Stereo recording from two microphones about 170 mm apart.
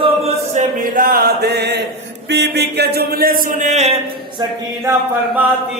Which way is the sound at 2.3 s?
80° right.